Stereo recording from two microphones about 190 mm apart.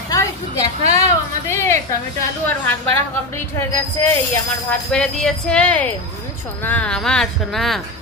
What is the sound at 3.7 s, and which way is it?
Speech, 15° left (ahead or behind).